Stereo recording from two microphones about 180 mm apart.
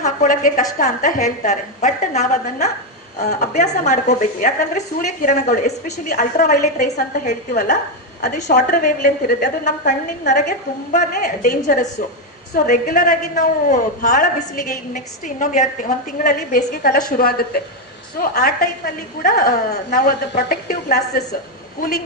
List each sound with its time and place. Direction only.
0.0 s a woman's voice: 45° left (ahead or behind)
9.0 s a woman's voice: 60° left (ahead or behind)
9.6 s a man's voice: 45° left (ahead or behind)